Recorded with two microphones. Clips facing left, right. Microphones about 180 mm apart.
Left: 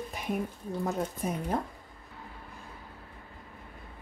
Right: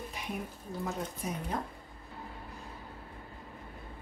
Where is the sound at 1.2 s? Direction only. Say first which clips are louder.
Left 4 dB; 50° left (ahead or behind).